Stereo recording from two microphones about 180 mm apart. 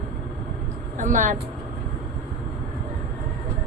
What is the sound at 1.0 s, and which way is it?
Speech, 45° right (ahead or behind).